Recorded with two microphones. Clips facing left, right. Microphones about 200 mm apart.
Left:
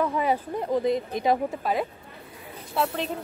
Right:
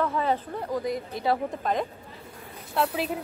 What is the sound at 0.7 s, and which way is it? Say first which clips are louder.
Speech: left 5 dB; 25° left (ahead or behind).